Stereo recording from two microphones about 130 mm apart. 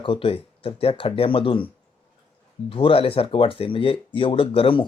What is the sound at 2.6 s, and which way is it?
Speech, 45° left (ahead or behind).